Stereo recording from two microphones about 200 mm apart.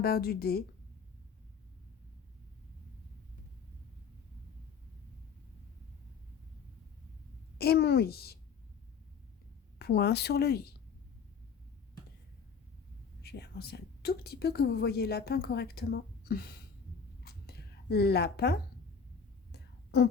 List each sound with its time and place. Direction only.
0.0 s a woman's voice: 50° left (ahead or behind)
7.6 s a woman's voice: 50° left (ahead or behind)
9.7 s a woman's voice: 50° left (ahead or behind)
13.2 s a woman's voice: 50° left (ahead or behind)
17.2 s a sound: 55° left (ahead or behind)